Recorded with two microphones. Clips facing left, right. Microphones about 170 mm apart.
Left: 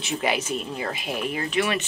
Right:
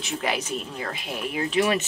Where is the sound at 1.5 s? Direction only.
40° right (ahead or behind).